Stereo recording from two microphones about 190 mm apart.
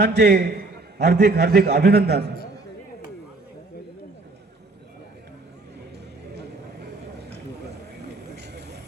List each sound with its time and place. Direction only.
0.0 s a man's voice: 60° right (ahead or behind)
8.4 s vehicle: 60° right (ahead or behind)